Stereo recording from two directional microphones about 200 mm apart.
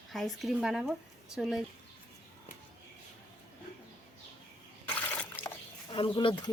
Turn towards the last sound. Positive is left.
turn(degrees=25)  # may be behind; listen again after turning